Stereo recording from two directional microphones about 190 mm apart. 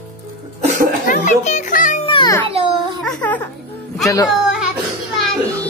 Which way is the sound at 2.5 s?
30° right (ahead or behind).